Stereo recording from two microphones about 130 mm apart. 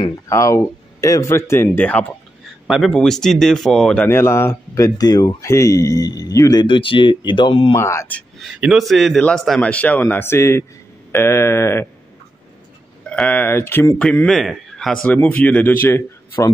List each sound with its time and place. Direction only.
0.3 s speech: 25° left (ahead or behind); by 4.0 s centre (ahead or behind)
4.0 s speech: 20° left (ahead or behind); by 7.7 s 40° left (ahead or behind)
7.7 s speech: 20° left (ahead or behind)
8.4 s speech: 5° right (ahead or behind); by 11.9 s 20° left (ahead or behind)
13.1 s speech: 10° left (ahead or behind)
15.2 s speech: 10° left (ahead or behind)